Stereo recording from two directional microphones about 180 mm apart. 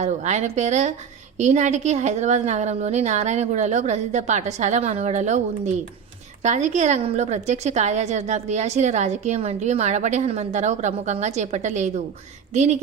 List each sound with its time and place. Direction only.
0.0 s a woman's voice: 40° right (ahead or behind)
6.4 s a woman's voice: 40° right (ahead or behind)